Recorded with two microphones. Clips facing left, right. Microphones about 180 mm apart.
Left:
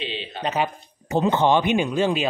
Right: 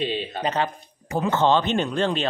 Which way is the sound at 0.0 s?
45° right (ahead or behind).